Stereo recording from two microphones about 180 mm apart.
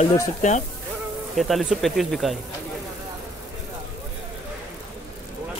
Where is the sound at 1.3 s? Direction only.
Centre (ahead or behind).